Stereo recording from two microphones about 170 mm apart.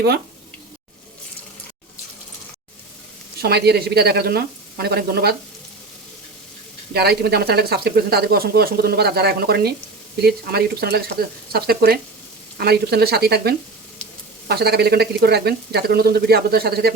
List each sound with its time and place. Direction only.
3.4 s speech: 70° right (ahead or behind)
6.9 s speech: 70° right (ahead or behind)